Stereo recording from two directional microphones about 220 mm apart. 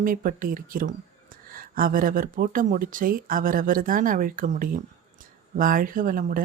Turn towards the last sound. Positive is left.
turn(degrees=-40)  # may be behind; listen again after turning